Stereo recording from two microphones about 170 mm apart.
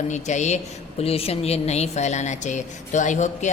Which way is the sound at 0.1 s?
45° left (ahead or behind).